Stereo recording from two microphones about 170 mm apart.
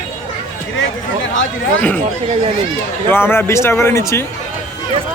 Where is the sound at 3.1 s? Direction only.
15° left (ahead or behind).